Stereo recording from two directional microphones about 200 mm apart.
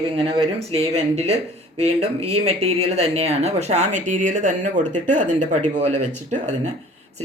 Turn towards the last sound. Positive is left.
turn(degrees=-35)  # may be behind; listen again after turning